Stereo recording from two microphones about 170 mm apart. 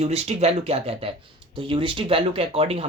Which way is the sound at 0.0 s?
40° right (ahead or behind).